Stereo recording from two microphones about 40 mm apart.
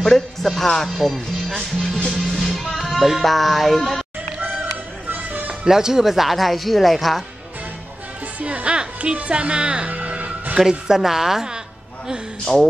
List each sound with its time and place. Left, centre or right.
0.0 s speech: centre
2.3 s music: centre
5.7 s speech: centre
8.4 s speech: right
9.9 s music: right
10.6 s a woman's voice: centre
12.5 s speech: centre